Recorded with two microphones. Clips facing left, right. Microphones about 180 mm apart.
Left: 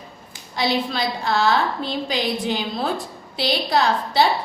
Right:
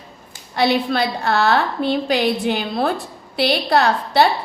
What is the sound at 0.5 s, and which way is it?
A woman's voice, 60° right (ahead or behind).